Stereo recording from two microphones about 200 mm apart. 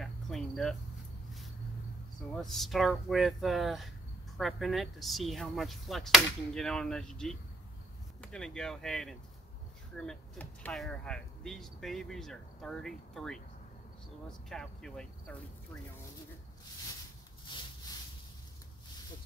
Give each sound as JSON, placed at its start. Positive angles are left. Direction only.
{"t": 0.0, "sound": "cricket", "side_deg": 0}
{"t": 2.4, "sound": "speech", "side_deg": 0}
{"t": 14.5, "sound": "speech", "side_deg": 5}
{"t": 17.5, "sound": "a sound", "side_deg": 25}